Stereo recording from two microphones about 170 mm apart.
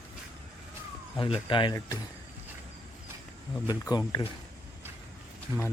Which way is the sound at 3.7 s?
25° left (ahead or behind).